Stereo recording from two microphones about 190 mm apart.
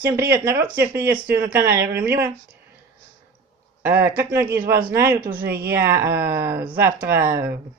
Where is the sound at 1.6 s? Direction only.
15° right (ahead or behind).